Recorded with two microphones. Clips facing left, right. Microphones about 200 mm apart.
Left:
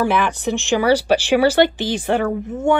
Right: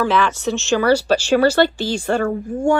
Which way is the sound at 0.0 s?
15° left (ahead or behind).